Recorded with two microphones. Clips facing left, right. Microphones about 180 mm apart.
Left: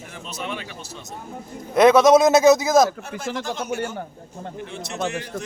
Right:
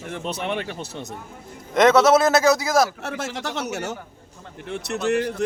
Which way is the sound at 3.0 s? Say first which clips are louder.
Even; 75° right (ahead or behind).